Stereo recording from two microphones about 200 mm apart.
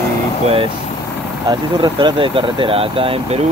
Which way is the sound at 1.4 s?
25° right (ahead or behind).